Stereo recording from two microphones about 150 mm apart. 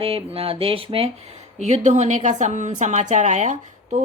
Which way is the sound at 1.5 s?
50° right (ahead or behind).